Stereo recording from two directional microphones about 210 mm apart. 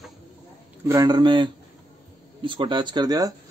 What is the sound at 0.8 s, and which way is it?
Speech, 20° right (ahead or behind).